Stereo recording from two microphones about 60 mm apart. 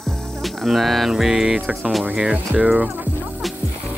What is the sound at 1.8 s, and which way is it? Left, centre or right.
Speech, centre.